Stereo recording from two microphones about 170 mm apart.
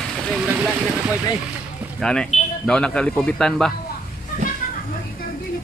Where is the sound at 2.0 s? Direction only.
5° left (ahead or behind).